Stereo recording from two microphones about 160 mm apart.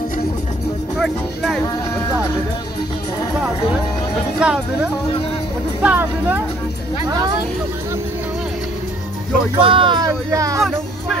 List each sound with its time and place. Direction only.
0.9 s speech: centre (ahead or behind)
4.4 s speech: 5° right (ahead or behind)
5.8 s speech: 10° right (ahead or behind)
9.6 s speech: 35° right (ahead or behind)